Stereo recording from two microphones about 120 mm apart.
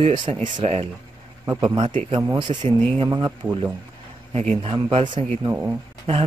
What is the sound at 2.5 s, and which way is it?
Speech, 50° right (ahead or behind).